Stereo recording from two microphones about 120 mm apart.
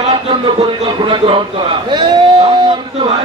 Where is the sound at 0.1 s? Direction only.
40° right (ahead or behind).